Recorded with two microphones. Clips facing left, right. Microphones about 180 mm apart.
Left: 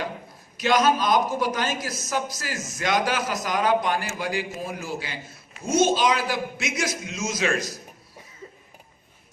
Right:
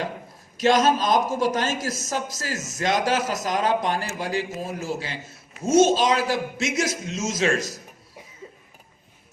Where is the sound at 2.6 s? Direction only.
40° right (ahead or behind).